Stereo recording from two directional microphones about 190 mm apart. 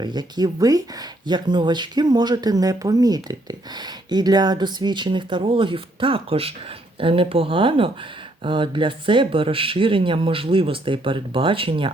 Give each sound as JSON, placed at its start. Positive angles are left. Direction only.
{"t": 0.0, "sound": "speech", "side_deg": -20}